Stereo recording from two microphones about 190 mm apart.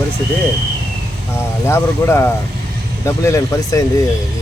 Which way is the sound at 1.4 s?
15° left (ahead or behind).